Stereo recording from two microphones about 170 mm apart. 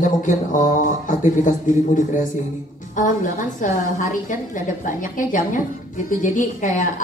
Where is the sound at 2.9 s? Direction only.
50° left (ahead or behind).